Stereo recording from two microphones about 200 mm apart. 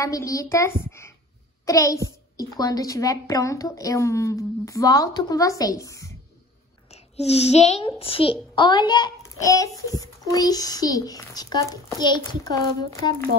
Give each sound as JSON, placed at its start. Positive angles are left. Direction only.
{"t": 0.0, "sound": "speech", "side_deg": 15}
{"t": 6.9, "sound": "a child's voice", "side_deg": 30}